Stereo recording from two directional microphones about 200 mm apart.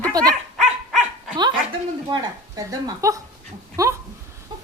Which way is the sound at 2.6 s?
15° right (ahead or behind).